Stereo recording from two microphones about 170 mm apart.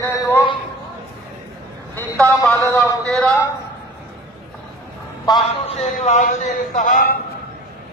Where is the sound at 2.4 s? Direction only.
15° left (ahead or behind).